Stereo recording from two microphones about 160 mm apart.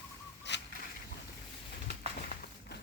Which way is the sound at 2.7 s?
90° left.